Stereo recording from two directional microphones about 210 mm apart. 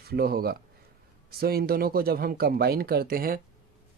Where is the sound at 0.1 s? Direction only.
45° right (ahead or behind).